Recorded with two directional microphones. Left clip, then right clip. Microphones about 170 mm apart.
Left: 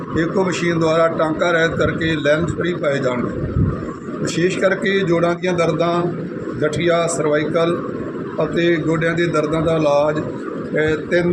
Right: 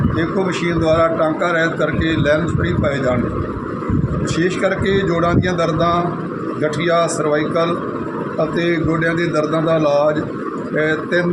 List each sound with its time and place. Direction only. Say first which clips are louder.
0.2 s a man's voice: left 2 dB; 20° left (ahead or behind)
4.4 s a man's voice: left 1 dB; 15° left (ahead or behind)